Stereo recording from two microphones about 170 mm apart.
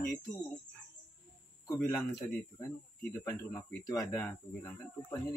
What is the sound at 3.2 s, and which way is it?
Speech, 20° left (ahead or behind).